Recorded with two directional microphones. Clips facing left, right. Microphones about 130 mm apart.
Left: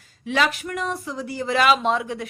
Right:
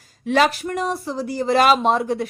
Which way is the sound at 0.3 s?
40° right (ahead or behind).